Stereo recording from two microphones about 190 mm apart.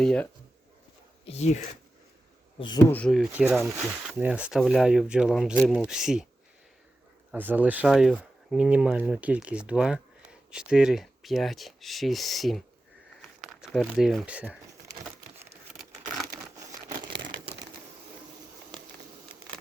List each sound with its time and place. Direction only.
0.0 s speech: 5° left (ahead or behind)
1.2 s speech: 35° left (ahead or behind)
2.6 s speech: 25° left (ahead or behind)
2.9 s speech: 5° left (ahead or behind)
3.6 s speech: 10° right (ahead or behind)
7.3 s speech: 10° right (ahead or behind)
16.7 s crumpling: 25° right (ahead or behind)